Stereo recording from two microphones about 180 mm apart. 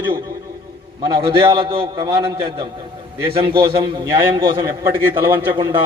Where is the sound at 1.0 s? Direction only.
30° right (ahead or behind).